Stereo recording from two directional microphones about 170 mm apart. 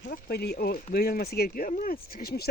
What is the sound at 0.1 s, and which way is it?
Speech, 70° left (ahead or behind).